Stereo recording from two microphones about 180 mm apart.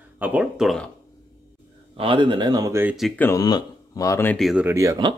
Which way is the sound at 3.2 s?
20° left (ahead or behind).